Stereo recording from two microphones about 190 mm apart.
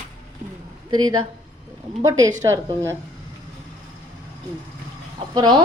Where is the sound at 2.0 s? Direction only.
20° right (ahead or behind).